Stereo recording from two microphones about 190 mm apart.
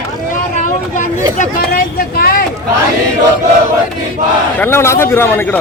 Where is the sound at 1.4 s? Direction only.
50° left (ahead or behind).